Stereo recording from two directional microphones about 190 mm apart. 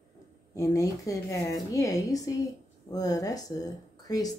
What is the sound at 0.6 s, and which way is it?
A woman's voice, 15° left (ahead or behind).